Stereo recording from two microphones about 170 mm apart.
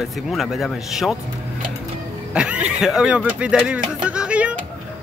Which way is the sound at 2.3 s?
5° right (ahead or behind).